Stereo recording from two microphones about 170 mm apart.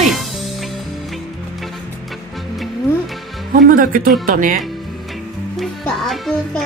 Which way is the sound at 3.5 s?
55° right (ahead or behind).